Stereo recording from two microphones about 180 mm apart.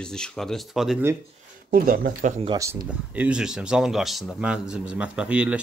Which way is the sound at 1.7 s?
50° right (ahead or behind).